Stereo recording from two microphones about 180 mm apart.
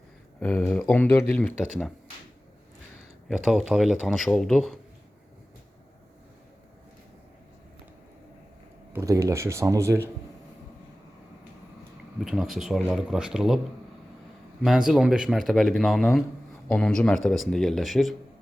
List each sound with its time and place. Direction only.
0.3 s speech: 10° left (ahead or behind)
3.2 s a man's voice: centre (ahead or behind)
8.9 s speech: 15° right (ahead or behind)
12.2 s a man's voice: centre (ahead or behind)
14.6 s a man's voice: centre (ahead or behind)